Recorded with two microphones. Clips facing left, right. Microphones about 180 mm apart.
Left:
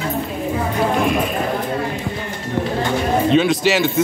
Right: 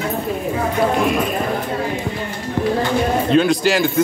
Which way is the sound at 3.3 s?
Centre (ahead or behind).